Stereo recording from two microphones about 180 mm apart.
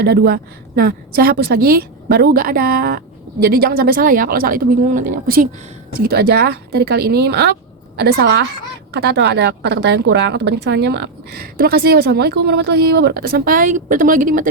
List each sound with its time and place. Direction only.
0.0 s a woman's voice: 60° right (ahead or behind)
6.0 s a woman's voice: 60° right (ahead or behind)